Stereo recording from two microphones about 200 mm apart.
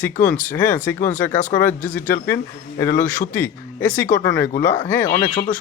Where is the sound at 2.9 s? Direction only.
40° left (ahead or behind).